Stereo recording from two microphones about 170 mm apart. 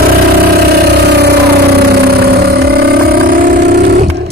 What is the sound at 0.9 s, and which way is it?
Vehicle, 75° right (ahead or behind).